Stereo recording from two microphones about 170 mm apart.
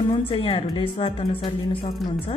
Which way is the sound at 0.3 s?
35° left (ahead or behind).